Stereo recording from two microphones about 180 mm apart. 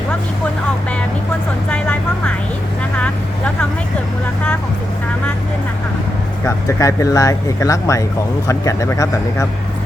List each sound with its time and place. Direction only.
1.7 s vehicle: 5° left (ahead or behind)
6.4 s speech: 15° left (ahead or behind)